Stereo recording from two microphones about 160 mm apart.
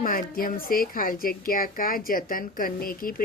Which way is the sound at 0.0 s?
60° left (ahead or behind).